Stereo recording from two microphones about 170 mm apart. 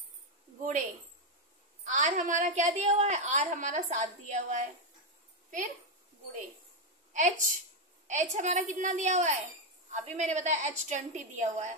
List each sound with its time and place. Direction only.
1.9 s a woman's voice: 45° right (ahead or behind)
7.2 s a woman's voice: 45° right (ahead or behind)